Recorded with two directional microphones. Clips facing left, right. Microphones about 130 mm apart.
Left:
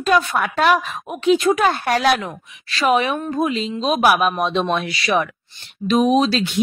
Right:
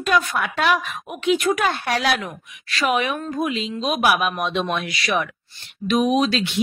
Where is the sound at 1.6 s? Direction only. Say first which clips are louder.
Left 4 dB; 45° left (ahead or behind).